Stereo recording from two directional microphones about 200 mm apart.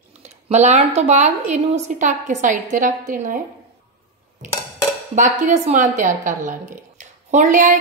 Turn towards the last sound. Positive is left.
turn(degrees=-40)  # may be behind; listen again after turning